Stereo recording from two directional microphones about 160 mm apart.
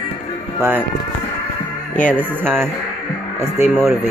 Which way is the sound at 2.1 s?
15° right (ahead or behind).